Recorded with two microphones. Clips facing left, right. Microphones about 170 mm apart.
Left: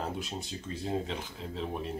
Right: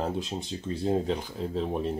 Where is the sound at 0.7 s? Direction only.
35° right (ahead or behind).